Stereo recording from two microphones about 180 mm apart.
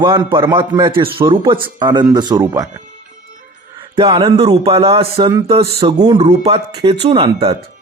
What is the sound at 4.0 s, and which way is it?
Music, 25° right (ahead or behind).